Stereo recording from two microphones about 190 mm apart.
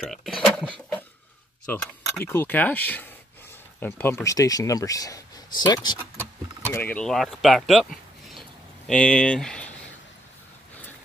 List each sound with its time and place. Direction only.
0.0 s a sound: centre (ahead or behind)
1.7 s speech: 10° left (ahead or behind)
6.6 s speech: 10° left (ahead or behind)